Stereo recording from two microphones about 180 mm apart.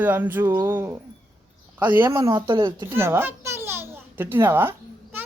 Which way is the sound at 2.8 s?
15° right (ahead or behind).